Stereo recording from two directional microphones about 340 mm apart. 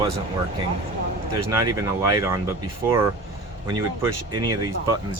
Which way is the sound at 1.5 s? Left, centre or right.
Centre.